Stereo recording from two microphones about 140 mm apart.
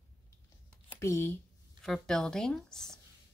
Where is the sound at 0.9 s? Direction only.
20° left (ahead or behind).